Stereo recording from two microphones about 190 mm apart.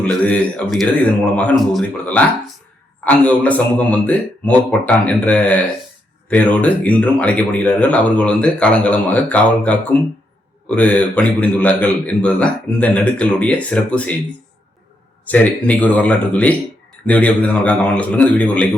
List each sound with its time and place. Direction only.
0.0 s speech: 5° left (ahead or behind)
15.2 s speech: 10° left (ahead or behind)